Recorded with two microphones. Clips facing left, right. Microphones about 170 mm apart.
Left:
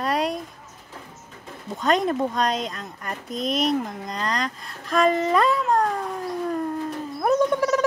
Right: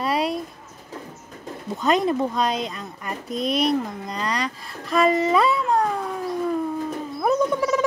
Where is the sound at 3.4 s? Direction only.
40° left (ahead or behind).